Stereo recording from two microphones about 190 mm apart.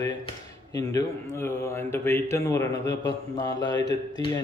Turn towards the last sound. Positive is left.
turn(degrees=20)  # may be behind; listen again after turning